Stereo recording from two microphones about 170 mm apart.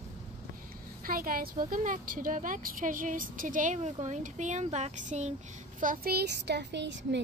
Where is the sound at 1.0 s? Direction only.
60° right (ahead or behind).